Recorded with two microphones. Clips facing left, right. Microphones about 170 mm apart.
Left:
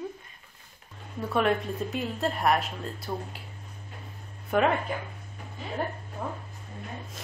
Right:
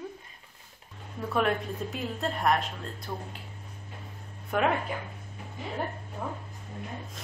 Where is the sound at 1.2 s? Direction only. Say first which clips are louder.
Left 2 dB; centre (ahead or behind).